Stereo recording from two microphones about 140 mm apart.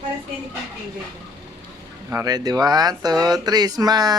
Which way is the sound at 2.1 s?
25° right (ahead or behind).